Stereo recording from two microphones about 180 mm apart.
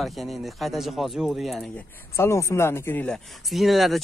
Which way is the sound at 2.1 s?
15° left (ahead or behind).